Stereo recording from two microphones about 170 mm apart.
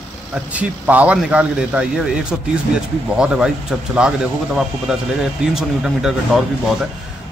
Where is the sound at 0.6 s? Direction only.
10° right (ahead or behind).